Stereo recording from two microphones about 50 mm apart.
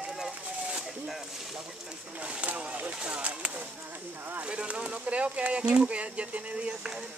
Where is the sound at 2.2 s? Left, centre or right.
Right.